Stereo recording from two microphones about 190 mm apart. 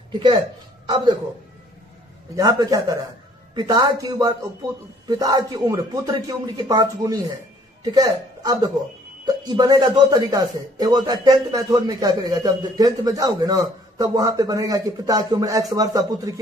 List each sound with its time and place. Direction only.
0.1 s speech: 25° right (ahead or behind)
2.3 s a man's voice: 20° right (ahead or behind)